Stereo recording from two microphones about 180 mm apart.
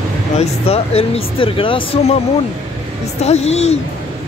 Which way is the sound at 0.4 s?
35° left (ahead or behind).